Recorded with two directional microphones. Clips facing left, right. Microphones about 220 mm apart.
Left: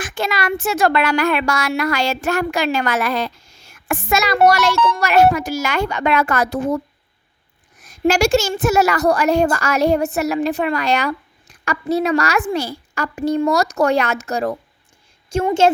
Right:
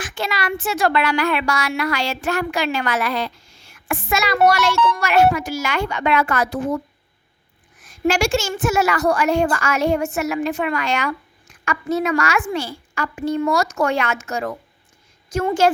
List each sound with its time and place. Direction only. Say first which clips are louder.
0.0 s speech: left 3 dB; 45° left (ahead or behind)
7.8 s a woman's voice: left 3 dB; 40° left (ahead or behind)
15.4 s speech: left 2 dB; 25° left (ahead or behind)